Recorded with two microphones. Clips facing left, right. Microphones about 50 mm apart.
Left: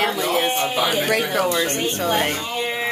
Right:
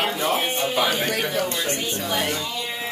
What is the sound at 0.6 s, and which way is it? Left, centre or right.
Speech, centre.